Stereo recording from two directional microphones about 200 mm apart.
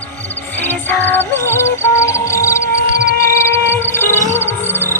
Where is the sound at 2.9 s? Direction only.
55° right (ahead or behind).